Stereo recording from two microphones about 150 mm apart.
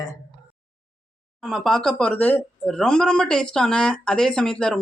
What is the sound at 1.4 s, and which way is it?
Speech, centre (ahead or behind).